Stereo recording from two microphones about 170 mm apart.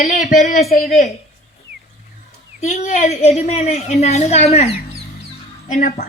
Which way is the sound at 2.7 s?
45° left (ahead or behind).